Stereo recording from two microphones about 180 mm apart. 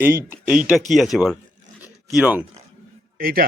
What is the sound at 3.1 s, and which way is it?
Speech, 55° right (ahead or behind).